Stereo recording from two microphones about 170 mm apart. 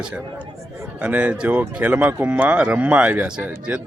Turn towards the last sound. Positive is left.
turn(degrees=-5)  # may be behind; listen again after turning